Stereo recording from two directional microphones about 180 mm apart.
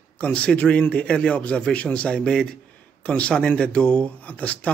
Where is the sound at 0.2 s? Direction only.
5° left (ahead or behind).